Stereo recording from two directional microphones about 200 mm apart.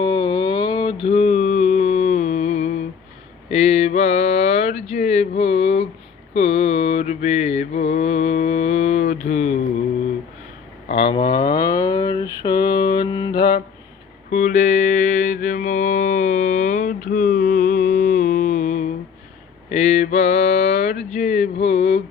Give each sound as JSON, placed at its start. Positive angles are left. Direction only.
{"t": 0.0, "sound": "mantra", "side_deg": 25}
{"t": 1.0, "sound": "a sound", "side_deg": 30}
{"t": 3.5, "sound": "mantra", "side_deg": 30}
{"t": 10.8, "sound": "mantra", "side_deg": 25}
{"t": 14.3, "sound": "mantra", "side_deg": 35}